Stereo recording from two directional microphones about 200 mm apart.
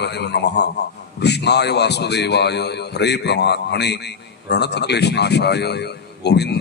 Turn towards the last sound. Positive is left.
turn(degrees=55)  # may be behind; listen again after turning